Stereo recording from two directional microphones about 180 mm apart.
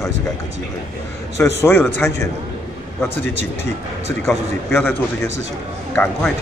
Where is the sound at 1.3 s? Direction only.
15° left (ahead or behind).